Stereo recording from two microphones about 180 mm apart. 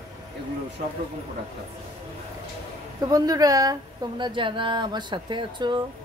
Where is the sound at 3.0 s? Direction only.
20° right (ahead or behind).